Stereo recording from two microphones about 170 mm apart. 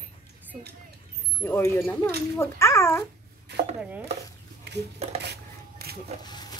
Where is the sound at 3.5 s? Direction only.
80° right.